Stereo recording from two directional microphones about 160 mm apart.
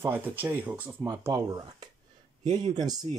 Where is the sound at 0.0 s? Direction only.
15° right (ahead or behind).